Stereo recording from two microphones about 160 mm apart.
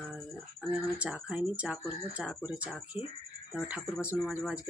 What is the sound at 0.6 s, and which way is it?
Speech, 5° right (ahead or behind).